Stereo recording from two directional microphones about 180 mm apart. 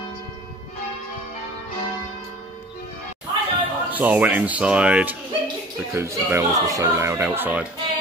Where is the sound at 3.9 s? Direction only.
10° right (ahead or behind).